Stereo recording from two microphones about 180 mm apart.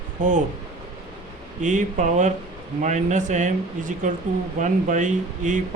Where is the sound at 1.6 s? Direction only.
45° right (ahead or behind).